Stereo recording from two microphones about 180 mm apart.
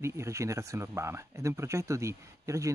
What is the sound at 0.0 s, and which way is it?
Speech, 15° right (ahead or behind).